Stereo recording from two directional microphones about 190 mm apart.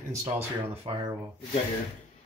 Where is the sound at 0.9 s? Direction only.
25° right (ahead or behind).